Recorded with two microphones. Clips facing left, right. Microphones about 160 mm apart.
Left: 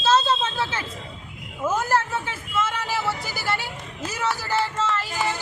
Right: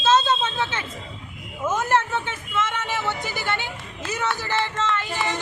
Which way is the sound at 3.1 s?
35° left (ahead or behind).